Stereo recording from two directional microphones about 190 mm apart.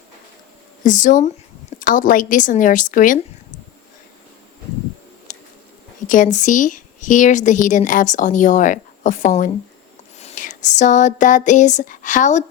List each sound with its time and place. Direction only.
0.9 s a woman's voice: 40° left (ahead or behind)
5.3 s a sound: 40° left (ahead or behind)
6.1 s a woman's voice: 40° left (ahead or behind)